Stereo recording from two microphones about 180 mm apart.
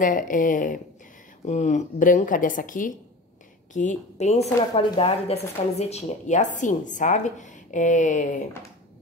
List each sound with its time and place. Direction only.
0.0 s speech: 50° left (ahead or behind)